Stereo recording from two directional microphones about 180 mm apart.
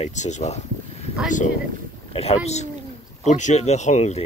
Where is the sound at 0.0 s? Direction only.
40° left (ahead or behind).